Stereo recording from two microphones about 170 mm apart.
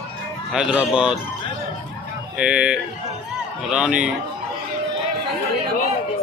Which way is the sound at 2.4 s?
5° right (ahead or behind).